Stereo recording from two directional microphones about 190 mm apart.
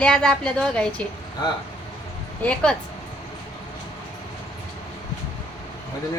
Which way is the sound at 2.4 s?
5° left (ahead or behind).